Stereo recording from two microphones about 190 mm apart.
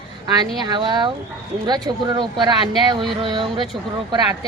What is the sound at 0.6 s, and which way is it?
Speech, 25° right (ahead or behind).